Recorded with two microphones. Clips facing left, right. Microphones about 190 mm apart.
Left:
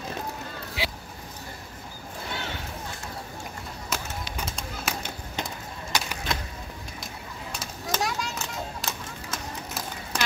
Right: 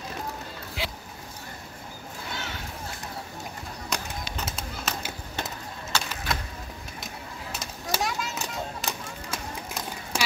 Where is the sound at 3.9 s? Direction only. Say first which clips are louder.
Even; 5° left (ahead or behind).